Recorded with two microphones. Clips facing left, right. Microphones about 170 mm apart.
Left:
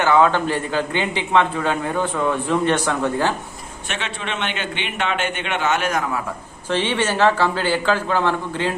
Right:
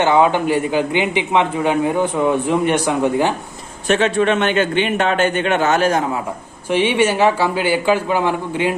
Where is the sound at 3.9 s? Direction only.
45° right (ahead or behind); by 6.2 s 25° right (ahead or behind).